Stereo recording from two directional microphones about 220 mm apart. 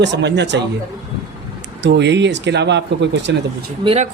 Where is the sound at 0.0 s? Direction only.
50° right (ahead or behind).